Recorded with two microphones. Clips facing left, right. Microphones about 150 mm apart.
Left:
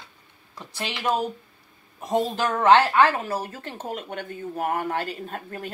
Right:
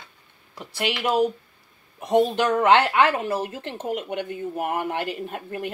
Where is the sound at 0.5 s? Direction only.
15° right (ahead or behind).